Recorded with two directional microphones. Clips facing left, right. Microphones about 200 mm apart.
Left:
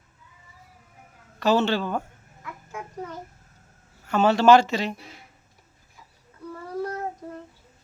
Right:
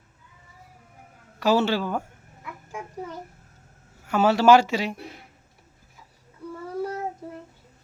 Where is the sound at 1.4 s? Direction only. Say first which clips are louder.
Even; 10° right (ahead or behind).